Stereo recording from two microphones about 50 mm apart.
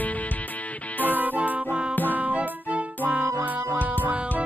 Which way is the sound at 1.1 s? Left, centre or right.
Right.